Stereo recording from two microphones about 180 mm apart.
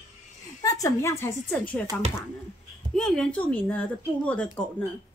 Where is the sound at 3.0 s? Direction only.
5° left (ahead or behind).